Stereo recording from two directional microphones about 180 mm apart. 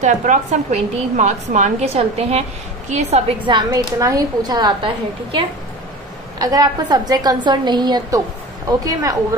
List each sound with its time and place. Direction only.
0.0 s a woman's voice: 45° right (ahead or behind); by 5.4 s 25° right (ahead or behind)
6.4 s a woman's voice: 20° right (ahead or behind)